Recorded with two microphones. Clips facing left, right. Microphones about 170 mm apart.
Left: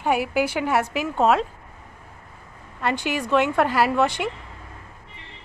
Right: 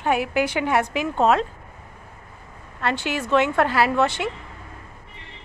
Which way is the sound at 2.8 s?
15° left (ahead or behind).